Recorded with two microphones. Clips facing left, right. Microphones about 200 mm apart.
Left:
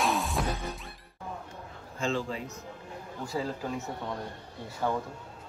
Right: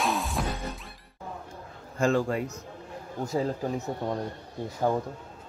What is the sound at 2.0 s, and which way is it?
Speech, 50° right (ahead or behind).